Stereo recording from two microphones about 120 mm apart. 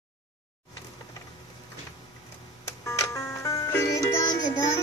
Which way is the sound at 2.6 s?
25° left (ahead or behind).